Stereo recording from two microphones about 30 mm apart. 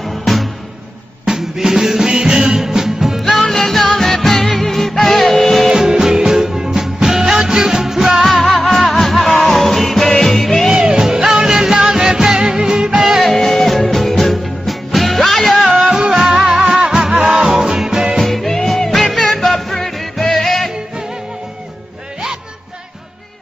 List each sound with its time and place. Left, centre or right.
0.0 s music: centre
1.2 s music: centre
3.4 s music: centre
5.7 s music: right
8.4 s music: centre
10.0 s music: centre
10.8 s music: right
13.2 s music: centre
15.7 s music: centre
18.2 s music: centre